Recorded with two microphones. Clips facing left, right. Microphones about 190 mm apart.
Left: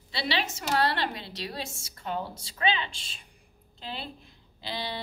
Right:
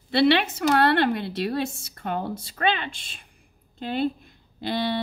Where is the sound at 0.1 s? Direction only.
60° right (ahead or behind).